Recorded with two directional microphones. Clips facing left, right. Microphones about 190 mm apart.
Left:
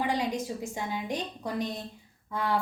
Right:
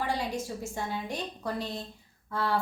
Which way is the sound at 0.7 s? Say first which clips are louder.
Left 1 dB; 15° left (ahead or behind).